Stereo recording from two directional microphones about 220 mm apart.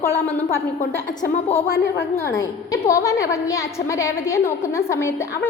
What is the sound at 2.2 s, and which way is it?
A woman's voice, 15° left (ahead or behind).